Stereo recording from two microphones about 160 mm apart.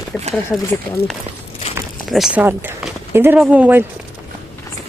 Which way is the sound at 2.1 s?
5° right (ahead or behind).